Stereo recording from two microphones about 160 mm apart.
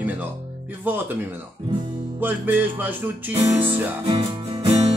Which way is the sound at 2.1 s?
10° right (ahead or behind).